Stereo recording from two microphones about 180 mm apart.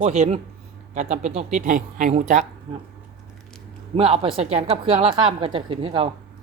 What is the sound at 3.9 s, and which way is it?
A woman's voice, 30° right (ahead or behind).